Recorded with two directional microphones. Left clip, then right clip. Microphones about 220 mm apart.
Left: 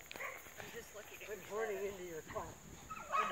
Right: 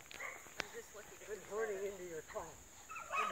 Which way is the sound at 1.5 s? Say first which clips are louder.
Even; 45° left (ahead or behind).